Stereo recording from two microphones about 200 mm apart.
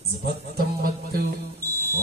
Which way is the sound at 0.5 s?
50° right (ahead or behind).